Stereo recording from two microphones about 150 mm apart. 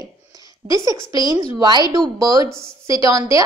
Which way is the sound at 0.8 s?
25° right (ahead or behind).